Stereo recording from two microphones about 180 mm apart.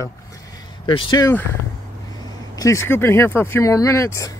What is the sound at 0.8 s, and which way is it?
Speech, 25° left (ahead or behind).